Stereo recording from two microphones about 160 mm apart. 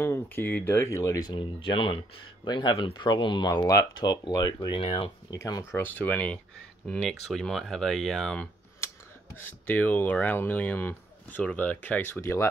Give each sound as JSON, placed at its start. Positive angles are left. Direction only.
{"t": 0.0, "sound": "speech", "side_deg": 15}
{"t": 5.3, "sound": "speech", "side_deg": 20}